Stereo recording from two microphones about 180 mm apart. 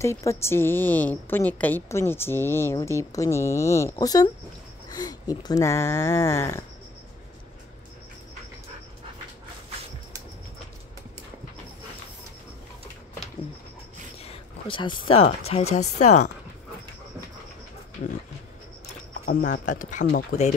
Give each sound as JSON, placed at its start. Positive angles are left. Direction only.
{"t": 0.0, "sound": "a woman's voice", "side_deg": 15}
{"t": 14.2, "sound": "a sound", "side_deg": 30}
{"t": 15.2, "sound": "speech", "side_deg": 35}
{"t": 19.2, "sound": "speech", "side_deg": 50}